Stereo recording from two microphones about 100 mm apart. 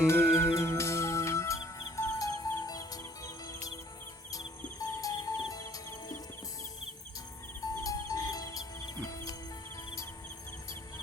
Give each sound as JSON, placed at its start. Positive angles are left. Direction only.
{"t": 0.0, "sound": "music", "side_deg": 25}
{"t": 4.8, "sound": "music", "side_deg": 35}
{"t": 7.6, "sound": "cricket", "side_deg": 35}